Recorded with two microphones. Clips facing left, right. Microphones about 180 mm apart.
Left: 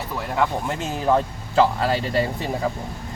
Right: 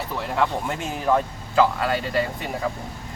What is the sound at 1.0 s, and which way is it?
Speech, 25° left (ahead or behind).